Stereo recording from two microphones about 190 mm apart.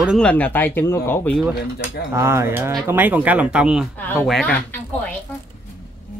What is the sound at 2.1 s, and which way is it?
Speech, 15° right (ahead or behind).